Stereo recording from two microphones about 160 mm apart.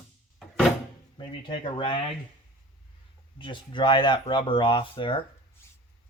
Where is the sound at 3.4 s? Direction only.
30° left (ahead or behind).